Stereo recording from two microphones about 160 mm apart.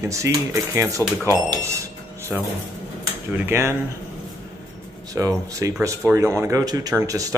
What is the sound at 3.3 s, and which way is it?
Speech, 15° right (ahead or behind).